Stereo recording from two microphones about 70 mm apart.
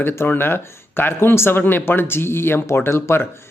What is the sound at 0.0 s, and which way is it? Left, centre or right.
Speech, left.